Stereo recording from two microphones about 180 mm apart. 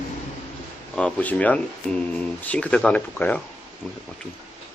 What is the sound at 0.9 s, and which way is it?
Speech, 5° left (ahead or behind).